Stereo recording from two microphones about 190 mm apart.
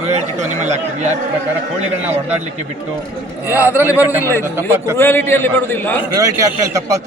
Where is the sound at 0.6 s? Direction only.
35° right (ahead or behind).